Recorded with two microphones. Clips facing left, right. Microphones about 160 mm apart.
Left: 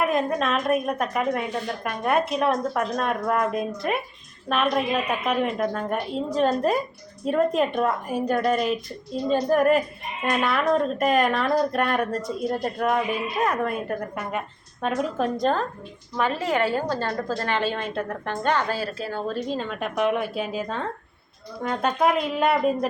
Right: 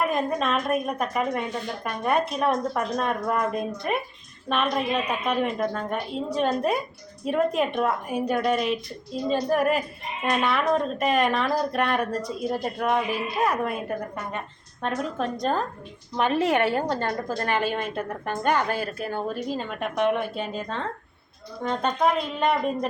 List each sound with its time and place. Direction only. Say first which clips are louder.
0.0 s a woman's voice: left 2 dB; centre (ahead or behind)
16.7 s a woman's voice: even; 20° right (ahead or behind)
18.7 s speech: even; 55° right (ahead or behind)
19.5 s a woman's voice: left 1 dB; 5° right (ahead or behind)